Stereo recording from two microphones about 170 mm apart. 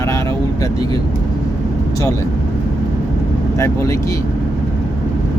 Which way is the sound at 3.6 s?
15° left (ahead or behind).